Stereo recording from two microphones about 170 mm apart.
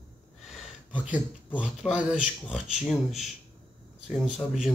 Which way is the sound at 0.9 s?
10° right (ahead or behind).